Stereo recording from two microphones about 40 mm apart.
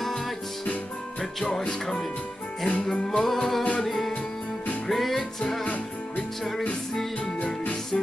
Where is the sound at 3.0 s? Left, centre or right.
Centre.